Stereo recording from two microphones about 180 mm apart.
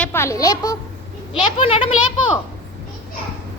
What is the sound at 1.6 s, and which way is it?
Speech, 30° left (ahead or behind).